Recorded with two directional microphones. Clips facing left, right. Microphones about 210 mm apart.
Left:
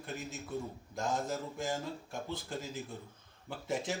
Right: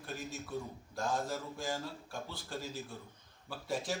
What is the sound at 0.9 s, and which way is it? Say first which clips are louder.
Speech: left 1 dB; 20° left (ahead or behind).